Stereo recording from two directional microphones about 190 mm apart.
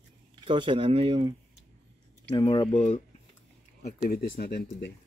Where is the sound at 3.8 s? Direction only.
50° left (ahead or behind).